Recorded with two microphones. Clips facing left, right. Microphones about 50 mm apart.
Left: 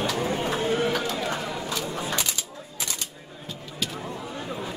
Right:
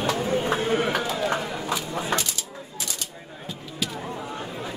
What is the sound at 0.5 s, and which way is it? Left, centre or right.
Chatter, right.